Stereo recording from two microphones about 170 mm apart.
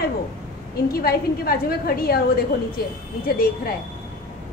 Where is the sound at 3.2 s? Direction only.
60° left (ahead or behind).